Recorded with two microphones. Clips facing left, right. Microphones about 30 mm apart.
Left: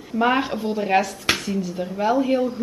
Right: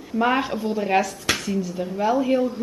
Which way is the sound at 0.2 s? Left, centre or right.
Centre.